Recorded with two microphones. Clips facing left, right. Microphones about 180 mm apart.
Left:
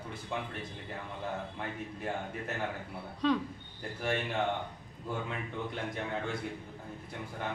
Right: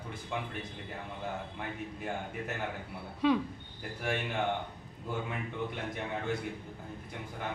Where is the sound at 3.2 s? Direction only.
10° right (ahead or behind).